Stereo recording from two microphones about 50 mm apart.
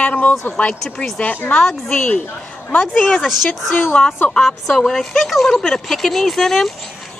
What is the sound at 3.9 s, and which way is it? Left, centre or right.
Speech, centre.